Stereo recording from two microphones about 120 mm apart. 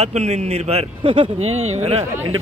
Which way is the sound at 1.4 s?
65° right (ahead or behind).